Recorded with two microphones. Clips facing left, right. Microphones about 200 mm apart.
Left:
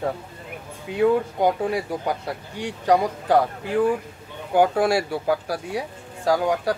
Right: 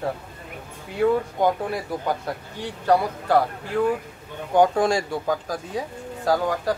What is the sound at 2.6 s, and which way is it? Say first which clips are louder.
Speech: left 1 dB; 15° left (ahead or behind).